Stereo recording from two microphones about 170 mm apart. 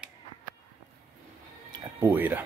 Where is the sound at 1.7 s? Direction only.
15° right (ahead or behind).